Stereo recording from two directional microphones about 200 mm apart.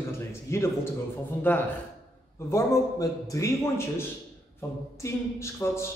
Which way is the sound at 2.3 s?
15° left (ahead or behind).